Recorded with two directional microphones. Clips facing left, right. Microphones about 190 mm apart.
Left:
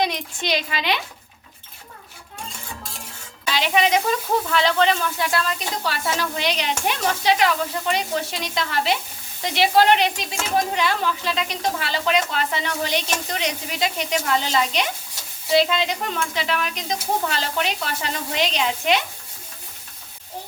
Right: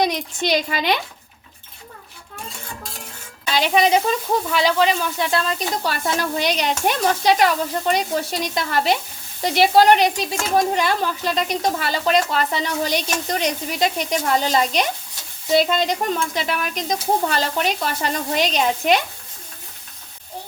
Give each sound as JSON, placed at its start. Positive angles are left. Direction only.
{"t": 0.0, "sound": "a woman's voice", "side_deg": -45}
{"t": 3.5, "sound": "speech", "side_deg": -40}
{"t": 4.0, "sound": "speech", "side_deg": -10}
{"t": 5.2, "sound": "speech", "side_deg": -25}
{"t": 5.8, "sound": "a woman's voice", "side_deg": -45}